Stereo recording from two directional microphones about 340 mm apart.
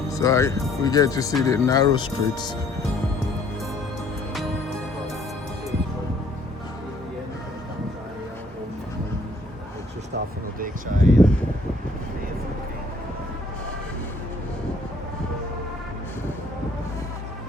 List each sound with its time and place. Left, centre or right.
0.1 s speech: centre
10.6 s speech: right